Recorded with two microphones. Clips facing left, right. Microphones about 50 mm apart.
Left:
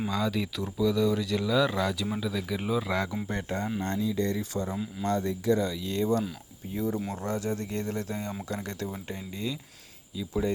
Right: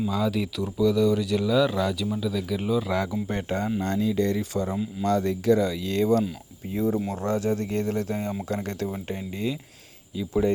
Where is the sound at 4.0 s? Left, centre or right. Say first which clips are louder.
Right 5 dB; right.